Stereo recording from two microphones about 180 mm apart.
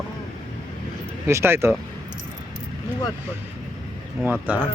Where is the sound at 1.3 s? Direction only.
15° right (ahead or behind).